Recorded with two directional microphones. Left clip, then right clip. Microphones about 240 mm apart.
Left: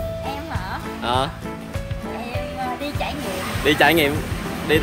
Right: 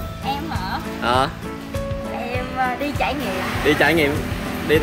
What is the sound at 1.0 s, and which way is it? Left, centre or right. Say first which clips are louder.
Speech: right 3 dB; centre.